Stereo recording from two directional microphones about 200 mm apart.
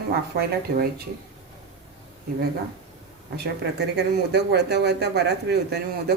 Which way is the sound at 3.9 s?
55° right (ahead or behind).